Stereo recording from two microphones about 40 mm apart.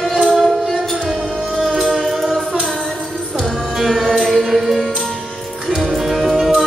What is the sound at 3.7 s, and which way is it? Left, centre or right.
Music, centre.